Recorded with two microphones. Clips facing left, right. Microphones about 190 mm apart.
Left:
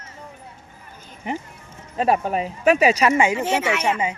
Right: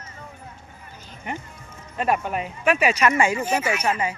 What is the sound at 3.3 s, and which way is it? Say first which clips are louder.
Speech: left 2 dB; 85° left.